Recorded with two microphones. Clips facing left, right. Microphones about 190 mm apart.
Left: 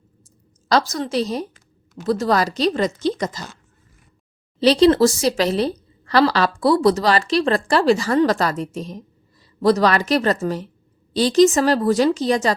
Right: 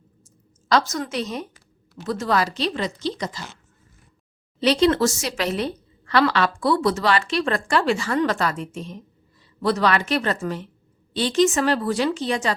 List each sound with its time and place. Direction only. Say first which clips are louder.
0.7 s a woman's voice: left 2 dB; 35° left (ahead or behind)
4.6 s a woman's voice: left 5 dB; 35° left (ahead or behind)